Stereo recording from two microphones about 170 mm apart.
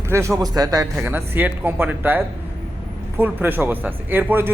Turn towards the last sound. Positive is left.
turn(degrees=-10)  # may be behind; listen again after turning